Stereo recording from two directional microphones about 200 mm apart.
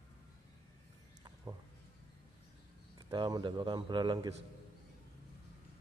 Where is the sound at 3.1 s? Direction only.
25° right (ahead or behind).